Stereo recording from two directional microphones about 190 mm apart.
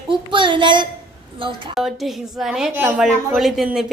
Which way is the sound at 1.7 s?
Centre (ahead or behind).